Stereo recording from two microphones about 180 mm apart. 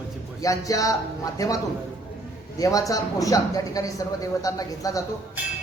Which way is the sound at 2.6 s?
20° left (ahead or behind).